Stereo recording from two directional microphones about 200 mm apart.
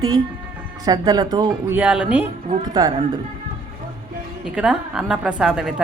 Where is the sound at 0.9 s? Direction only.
20° right (ahead or behind).